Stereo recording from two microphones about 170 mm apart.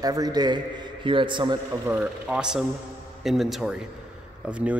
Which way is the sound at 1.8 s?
10° right (ahead or behind).